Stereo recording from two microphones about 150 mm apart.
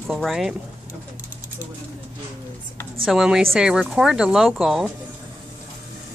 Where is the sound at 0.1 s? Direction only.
Centre (ahead or behind).